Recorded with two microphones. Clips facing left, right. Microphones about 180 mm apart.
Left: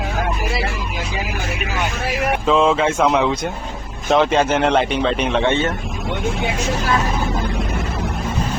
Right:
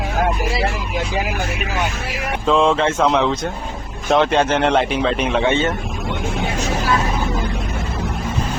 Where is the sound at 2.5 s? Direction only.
Centre (ahead or behind).